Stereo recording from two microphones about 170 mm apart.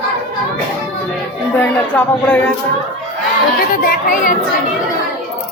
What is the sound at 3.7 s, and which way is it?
Speech, 55° left (ahead or behind).